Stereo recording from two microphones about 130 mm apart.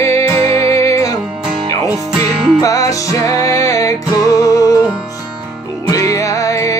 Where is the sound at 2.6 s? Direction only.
25° left (ahead or behind).